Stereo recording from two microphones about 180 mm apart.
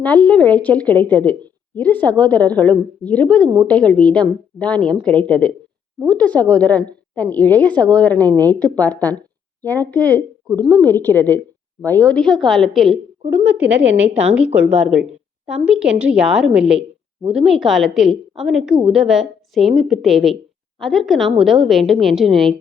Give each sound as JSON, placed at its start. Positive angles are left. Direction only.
{"t": 0.0, "sound": "a woman's voice", "side_deg": 10}
{"t": 3.4, "sound": "a woman's voice", "side_deg": -25}
{"t": 3.7, "sound": "a woman's voice", "side_deg": 5}
{"t": 13.3, "sound": "a woman's voice", "side_deg": -10}